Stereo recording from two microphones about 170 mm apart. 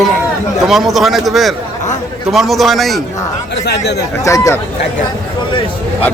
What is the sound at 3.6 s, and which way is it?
Speech, 80° left.